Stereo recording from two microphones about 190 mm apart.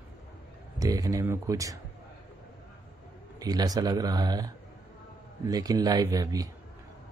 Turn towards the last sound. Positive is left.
turn(degrees=-20)  # may be behind; listen again after turning